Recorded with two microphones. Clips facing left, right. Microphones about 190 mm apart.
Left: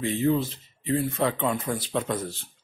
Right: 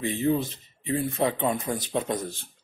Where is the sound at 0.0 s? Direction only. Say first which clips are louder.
Left 1 dB; 20° right (ahead or behind).